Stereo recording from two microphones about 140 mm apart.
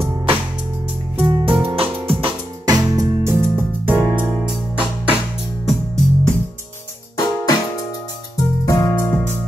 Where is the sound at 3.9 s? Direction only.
10° right (ahead or behind).